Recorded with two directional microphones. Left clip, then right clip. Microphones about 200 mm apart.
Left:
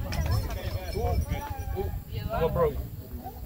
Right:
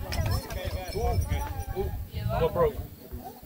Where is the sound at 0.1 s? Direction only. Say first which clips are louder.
Right 2 dB; 50° right (ahead or behind).